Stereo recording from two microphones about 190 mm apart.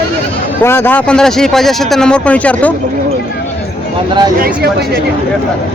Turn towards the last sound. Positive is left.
turn(degrees=-55)  # may be behind; listen again after turning